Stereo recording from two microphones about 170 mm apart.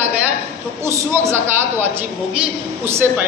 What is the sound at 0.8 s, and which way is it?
A woman's voice, 15° right (ahead or behind).